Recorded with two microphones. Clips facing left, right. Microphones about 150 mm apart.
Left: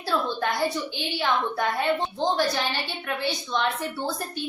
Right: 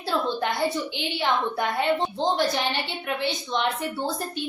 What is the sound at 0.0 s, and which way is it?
A woman's voice, 20° right (ahead or behind).